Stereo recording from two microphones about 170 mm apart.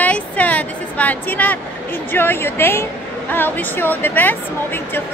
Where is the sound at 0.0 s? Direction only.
10° left (ahead or behind).